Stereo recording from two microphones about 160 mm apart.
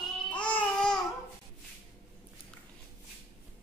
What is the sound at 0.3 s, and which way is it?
Babbling, 10° left (ahead or behind).